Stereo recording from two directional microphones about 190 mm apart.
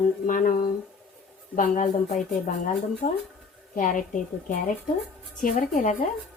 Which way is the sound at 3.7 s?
45° left (ahead or behind).